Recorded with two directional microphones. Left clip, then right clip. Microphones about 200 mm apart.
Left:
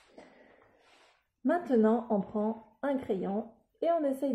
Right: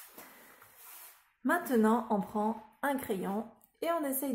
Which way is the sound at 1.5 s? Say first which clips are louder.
Left 2 dB; 10° left (ahead or behind).